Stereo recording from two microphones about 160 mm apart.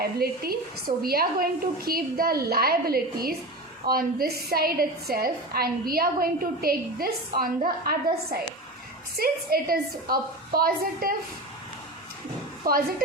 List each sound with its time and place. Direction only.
0.0 s a woman's voice: 70° right (ahead or behind)
12.7 s speech: 65° right (ahead or behind)